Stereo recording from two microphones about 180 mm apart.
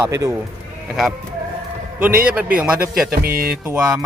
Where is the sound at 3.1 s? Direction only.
55° right (ahead or behind).